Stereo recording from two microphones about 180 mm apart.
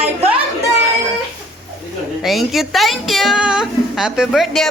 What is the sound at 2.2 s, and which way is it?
A woman's voice, centre (ahead or behind).